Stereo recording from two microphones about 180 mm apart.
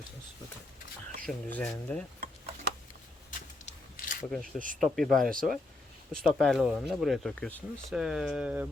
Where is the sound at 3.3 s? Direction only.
50° left (ahead or behind).